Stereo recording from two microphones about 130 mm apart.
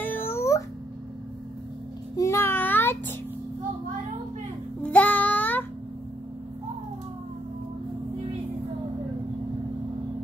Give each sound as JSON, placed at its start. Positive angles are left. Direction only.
{"t": 0.0, "sound": "a sound", "side_deg": 15}
{"t": 2.1, "sound": "child singing", "side_deg": 20}
{"t": 4.8, "sound": "child singing", "side_deg": 10}